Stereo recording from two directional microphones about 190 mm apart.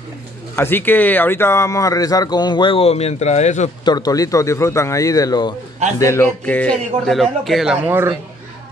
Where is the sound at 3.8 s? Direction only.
20° left (ahead or behind); by 8.1 s 10° right (ahead or behind).